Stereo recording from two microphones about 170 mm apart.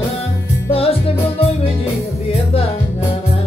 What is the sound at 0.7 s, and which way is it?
Music, 35° left (ahead or behind).